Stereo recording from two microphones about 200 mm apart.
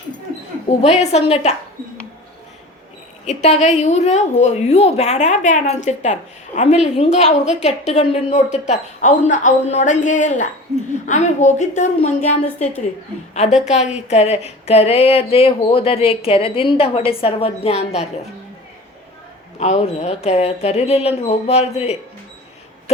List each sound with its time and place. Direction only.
0.8 s a woman's voice: 35° left (ahead or behind)
3.2 s a woman's voice: 35° left (ahead or behind)
19.5 s a woman's voice: 35° left (ahead or behind)